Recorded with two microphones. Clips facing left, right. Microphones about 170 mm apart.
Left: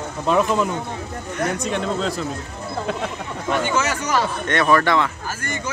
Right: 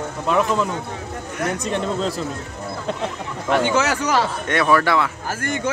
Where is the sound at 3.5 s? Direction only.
80° right.